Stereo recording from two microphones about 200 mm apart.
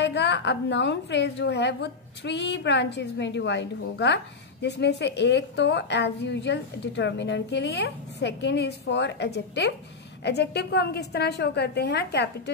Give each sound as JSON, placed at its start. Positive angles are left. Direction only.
{"t": 0.0, "sound": "a woman's voice", "side_deg": 60}